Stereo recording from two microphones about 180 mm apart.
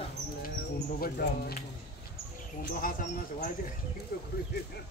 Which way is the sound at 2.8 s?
45° left (ahead or behind).